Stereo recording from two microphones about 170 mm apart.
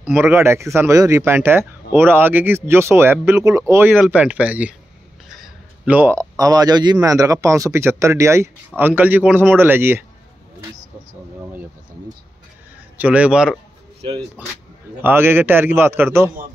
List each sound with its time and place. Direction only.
0.0 s speech: 10° right (ahead or behind)
12.9 s speech: 10° right (ahead or behind)